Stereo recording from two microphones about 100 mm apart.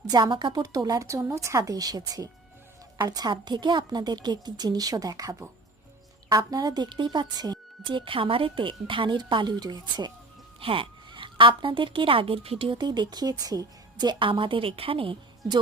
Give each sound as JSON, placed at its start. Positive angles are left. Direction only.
{"t": 0.1, "sound": "a woman's voice", "side_deg": -50}
{"t": 7.9, "sound": "a woman's voice", "side_deg": -55}
{"t": 10.6, "sound": "a woman's voice", "side_deg": -65}